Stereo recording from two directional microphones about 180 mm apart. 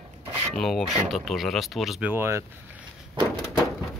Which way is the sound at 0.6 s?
Centre (ahead or behind).